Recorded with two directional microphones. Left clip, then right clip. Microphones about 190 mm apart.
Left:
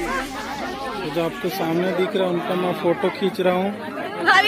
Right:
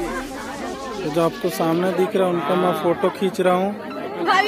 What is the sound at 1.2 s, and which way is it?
Speech, 25° right (ahead or behind).